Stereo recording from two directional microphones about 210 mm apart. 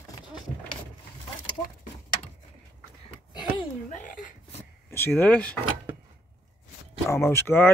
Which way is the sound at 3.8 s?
40° left (ahead or behind).